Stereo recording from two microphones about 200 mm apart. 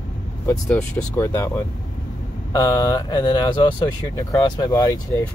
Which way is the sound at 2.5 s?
20° left (ahead or behind).